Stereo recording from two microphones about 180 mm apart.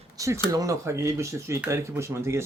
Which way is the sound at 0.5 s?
20° right (ahead or behind).